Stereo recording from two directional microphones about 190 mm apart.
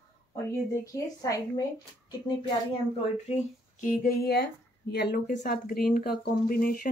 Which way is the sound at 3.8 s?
45° left (ahead or behind).